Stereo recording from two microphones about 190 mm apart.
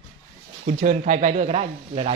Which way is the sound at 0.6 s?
45° right (ahead or behind).